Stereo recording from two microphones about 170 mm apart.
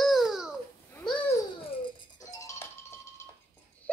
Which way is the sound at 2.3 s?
20° left (ahead or behind).